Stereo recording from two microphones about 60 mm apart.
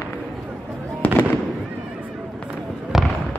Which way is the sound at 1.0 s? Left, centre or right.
Left.